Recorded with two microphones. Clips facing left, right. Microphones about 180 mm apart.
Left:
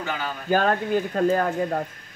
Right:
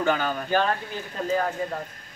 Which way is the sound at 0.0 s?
50° right (ahead or behind).